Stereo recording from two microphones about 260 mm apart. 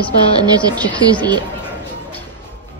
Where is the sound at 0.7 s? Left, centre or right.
Centre.